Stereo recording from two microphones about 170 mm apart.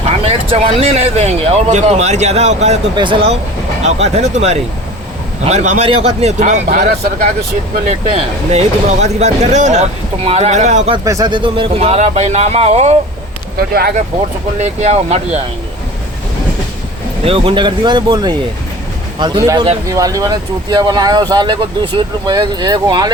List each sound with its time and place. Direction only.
0.0 s speech: 35° right (ahead or behind)
2.9 s a man's voice: 30° right (ahead or behind); by 7.3 s 50° right (ahead or behind)
8.4 s speech: 40° right (ahead or behind)
10.9 s speech: 20° right (ahead or behind); by 13.0 s 40° right (ahead or behind)
13.6 s speech: 65° right (ahead or behind)
14.6 s speech: 45° right (ahead or behind)
17.2 s speech: 30° right (ahead or behind)